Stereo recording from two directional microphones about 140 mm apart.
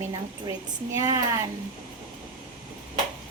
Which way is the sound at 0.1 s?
25° right (ahead or behind).